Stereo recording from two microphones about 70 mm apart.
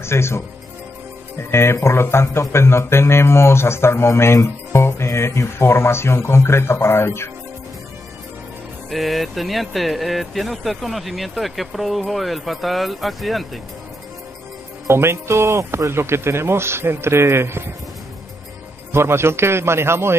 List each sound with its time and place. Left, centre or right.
0.0 s speech: left
1.5 s speech: left
8.9 s speech: centre
14.9 s speech: right
18.9 s speech: right